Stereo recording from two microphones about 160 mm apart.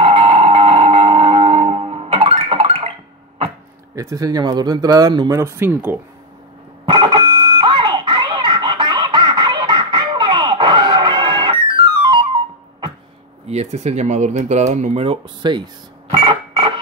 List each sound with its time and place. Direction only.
0.0 s music: 35° right (ahead or behind)
3.9 s speech: 20° right (ahead or behind)
6.9 s a sound: 30° right (ahead or behind)
13.5 s speech: 45° right (ahead or behind)